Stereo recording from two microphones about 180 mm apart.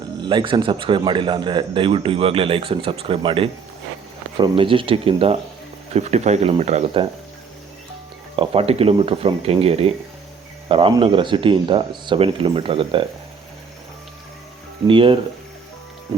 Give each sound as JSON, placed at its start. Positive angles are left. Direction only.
{"t": 0.2, "sound": "a man's voice", "side_deg": -25}
{"t": 8.4, "sound": "a man's voice", "side_deg": -35}
{"t": 14.8, "sound": "a man's voice", "side_deg": -30}